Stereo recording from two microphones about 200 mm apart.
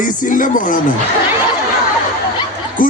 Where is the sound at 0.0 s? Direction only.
40° left (ahead or behind).